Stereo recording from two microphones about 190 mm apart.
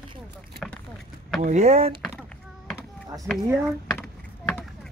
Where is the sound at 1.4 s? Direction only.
35° right (ahead or behind).